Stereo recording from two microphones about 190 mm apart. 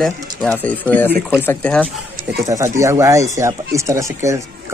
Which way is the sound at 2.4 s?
15° right (ahead or behind).